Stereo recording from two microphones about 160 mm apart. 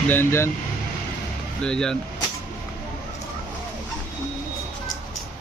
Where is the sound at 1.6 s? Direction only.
5° left (ahead or behind).